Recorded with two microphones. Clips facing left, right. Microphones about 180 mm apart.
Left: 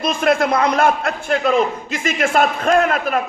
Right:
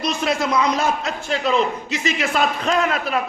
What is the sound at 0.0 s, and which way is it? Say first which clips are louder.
A man's voice: left 5 dB; 50° left (ahead or behind).